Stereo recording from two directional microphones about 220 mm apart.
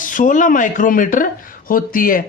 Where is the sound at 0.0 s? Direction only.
35° left (ahead or behind).